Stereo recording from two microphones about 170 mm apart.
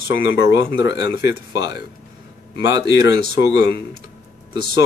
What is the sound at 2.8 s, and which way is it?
Speech, 90° left.